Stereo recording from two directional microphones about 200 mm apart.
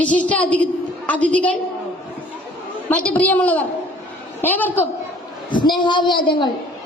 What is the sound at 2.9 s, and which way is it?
A woman's voice, 10° left (ahead or behind).